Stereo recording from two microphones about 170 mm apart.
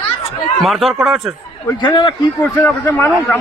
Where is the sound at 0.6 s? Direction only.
Centre (ahead or behind).